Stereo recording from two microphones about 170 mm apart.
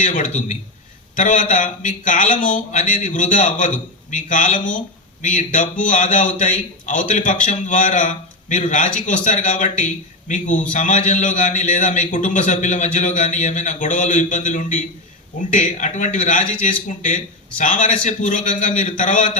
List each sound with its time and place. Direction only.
0.0 s a man's voice: 50° left (ahead or behind)